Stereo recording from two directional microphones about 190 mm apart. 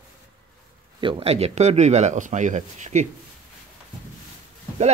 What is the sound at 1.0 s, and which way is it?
Speech, 30° right (ahead or behind).